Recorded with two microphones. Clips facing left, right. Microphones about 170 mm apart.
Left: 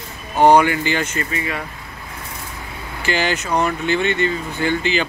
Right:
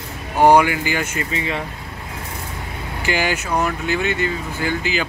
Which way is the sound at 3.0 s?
10° right (ahead or behind).